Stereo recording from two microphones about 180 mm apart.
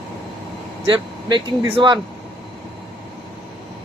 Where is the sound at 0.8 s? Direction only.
30° right (ahead or behind).